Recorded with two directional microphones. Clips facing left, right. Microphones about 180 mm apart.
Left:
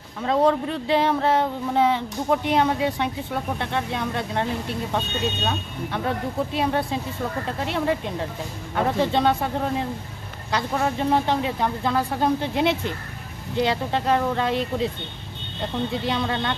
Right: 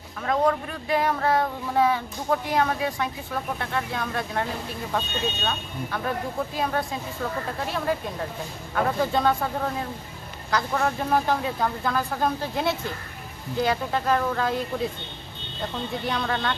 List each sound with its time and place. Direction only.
0.2 s speech: 25° left (ahead or behind)
15.9 s speech: 20° left (ahead or behind)